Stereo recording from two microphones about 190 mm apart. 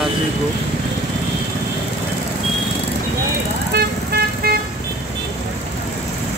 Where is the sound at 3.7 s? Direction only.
60° right (ahead or behind).